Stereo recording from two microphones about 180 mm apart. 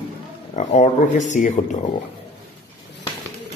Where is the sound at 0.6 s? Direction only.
40° left (ahead or behind).